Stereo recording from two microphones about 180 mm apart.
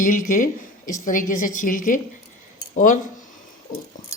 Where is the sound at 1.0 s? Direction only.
45° left (ahead or behind).